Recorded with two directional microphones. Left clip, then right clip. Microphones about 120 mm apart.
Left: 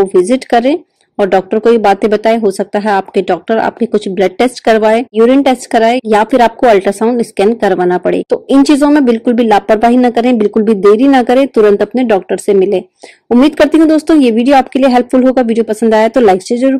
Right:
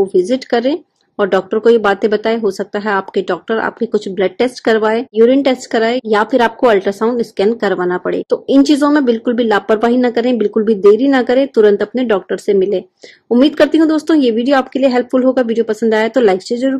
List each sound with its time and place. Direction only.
0.1 s speech: 40° left (ahead or behind)